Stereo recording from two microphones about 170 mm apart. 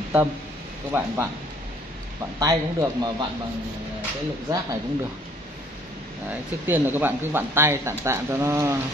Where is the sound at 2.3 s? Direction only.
20° right (ahead or behind).